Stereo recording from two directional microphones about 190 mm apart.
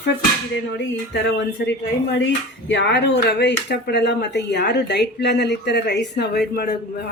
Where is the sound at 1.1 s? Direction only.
65° left (ahead or behind).